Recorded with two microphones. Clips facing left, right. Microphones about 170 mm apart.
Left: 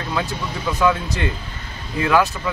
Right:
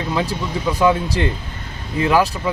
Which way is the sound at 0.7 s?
35° right (ahead or behind).